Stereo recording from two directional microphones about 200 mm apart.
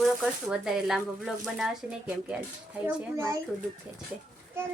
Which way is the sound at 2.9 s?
15° right (ahead or behind).